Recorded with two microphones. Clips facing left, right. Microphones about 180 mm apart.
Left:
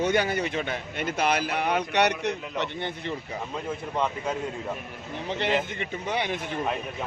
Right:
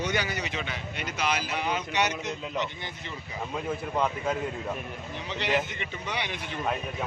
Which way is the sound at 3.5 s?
5° right (ahead or behind).